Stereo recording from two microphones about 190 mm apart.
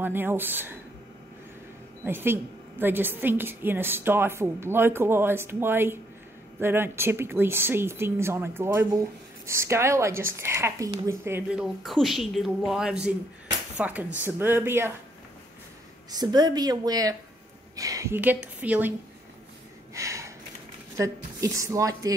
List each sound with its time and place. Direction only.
0.0 s a woman's voice: 10° right (ahead or behind)
2.0 s a woman's voice: 10° right (ahead or behind)
16.1 s a woman's voice: 20° right (ahead or behind)
19.9 s gasp: 15° right (ahead or behind)
21.0 s a woman's voice: 15° right (ahead or behind)